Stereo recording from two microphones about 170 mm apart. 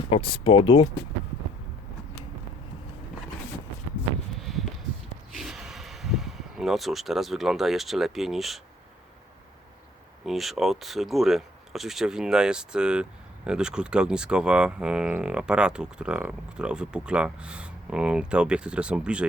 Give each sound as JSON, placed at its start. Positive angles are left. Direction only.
{"t": 0.1, "sound": "speech", "side_deg": 30}
{"t": 4.4, "sound": "a sound", "side_deg": 0}
{"t": 5.4, "sound": "speech", "side_deg": 0}
{"t": 10.2, "sound": "speech", "side_deg": 0}